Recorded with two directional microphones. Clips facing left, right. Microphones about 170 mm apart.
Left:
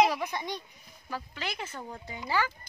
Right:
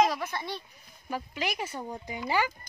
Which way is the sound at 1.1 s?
15° right (ahead or behind).